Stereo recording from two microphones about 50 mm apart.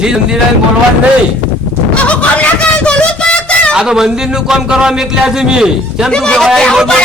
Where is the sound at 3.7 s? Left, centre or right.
Centre.